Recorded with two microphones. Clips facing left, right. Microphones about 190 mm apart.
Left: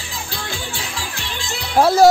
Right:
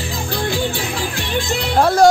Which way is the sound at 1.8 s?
5° left (ahead or behind).